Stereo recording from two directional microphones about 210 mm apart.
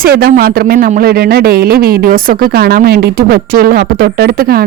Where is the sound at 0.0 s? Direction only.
45° right (ahead or behind).